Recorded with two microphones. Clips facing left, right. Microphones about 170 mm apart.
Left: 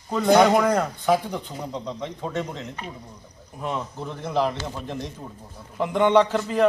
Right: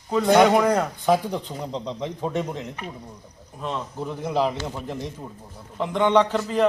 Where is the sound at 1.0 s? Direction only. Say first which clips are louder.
Right 3 dB; 20° right (ahead or behind).